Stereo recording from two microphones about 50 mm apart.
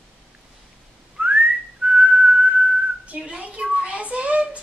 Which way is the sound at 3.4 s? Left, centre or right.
Right.